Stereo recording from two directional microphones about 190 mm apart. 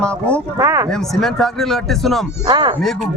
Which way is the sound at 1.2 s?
5° left (ahead or behind).